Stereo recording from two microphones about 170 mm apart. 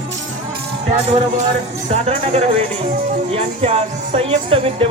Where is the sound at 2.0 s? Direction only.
40° right (ahead or behind).